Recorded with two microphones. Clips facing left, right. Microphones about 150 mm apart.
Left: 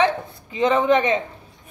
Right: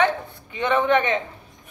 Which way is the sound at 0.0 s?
30° left (ahead or behind).